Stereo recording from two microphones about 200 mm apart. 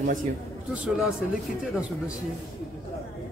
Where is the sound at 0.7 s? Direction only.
5° right (ahead or behind).